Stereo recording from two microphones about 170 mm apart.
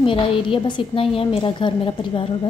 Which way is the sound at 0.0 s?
30° left (ahead or behind).